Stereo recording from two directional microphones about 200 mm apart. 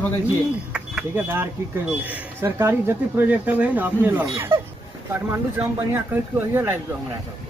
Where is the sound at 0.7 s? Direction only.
10° right (ahead or behind).